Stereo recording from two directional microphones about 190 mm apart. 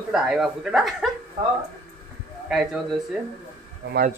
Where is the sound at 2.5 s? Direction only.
Centre (ahead or behind).